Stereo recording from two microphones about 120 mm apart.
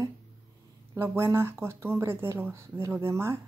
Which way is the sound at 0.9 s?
20° right (ahead or behind).